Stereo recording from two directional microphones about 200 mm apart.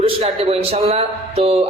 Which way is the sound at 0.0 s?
30° right (ahead or behind).